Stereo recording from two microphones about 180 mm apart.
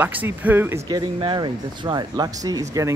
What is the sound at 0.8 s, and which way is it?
Speech, 25° right (ahead or behind).